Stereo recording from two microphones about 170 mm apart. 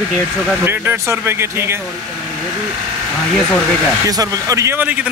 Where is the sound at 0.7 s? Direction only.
15° right (ahead or behind).